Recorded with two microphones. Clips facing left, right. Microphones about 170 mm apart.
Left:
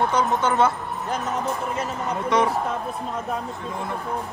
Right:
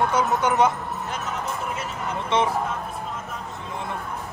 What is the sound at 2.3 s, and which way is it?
Speech, 25° right (ahead or behind).